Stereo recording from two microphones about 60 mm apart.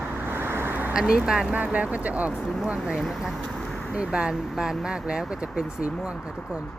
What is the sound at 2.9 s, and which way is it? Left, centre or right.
Speech, centre.